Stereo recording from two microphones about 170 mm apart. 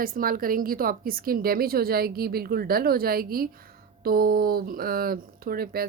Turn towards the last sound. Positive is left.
turn(degrees=-60)  # may be behind; listen again after turning